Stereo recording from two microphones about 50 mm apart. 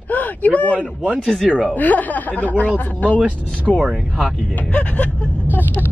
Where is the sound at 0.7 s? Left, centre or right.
Right.